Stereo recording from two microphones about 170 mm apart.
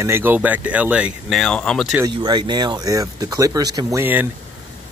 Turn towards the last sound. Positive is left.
turn(degrees=-15)  # may be behind; listen again after turning